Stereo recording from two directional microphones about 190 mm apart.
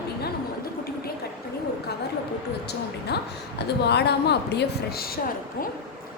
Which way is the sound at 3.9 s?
60° left (ahead or behind).